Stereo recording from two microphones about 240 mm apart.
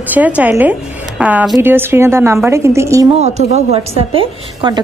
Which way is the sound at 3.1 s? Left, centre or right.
Right.